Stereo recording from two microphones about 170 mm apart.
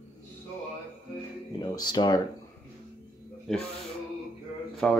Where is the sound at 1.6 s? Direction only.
25° left (ahead or behind).